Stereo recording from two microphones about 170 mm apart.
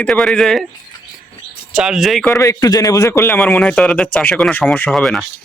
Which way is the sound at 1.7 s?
5° right (ahead or behind).